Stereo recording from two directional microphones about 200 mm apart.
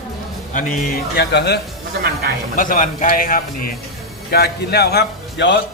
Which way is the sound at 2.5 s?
40° left (ahead or behind).